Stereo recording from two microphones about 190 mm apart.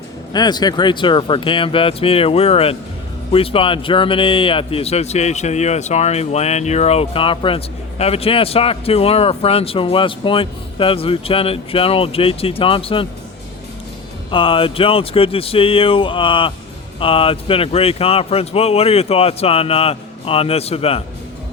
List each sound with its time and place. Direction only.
0.3 s speech: 20° left (ahead or behind)
14.3 s speech: 25° left (ahead or behind)